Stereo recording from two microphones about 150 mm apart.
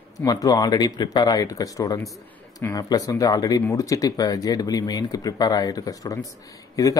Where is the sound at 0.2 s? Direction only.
25° left (ahead or behind).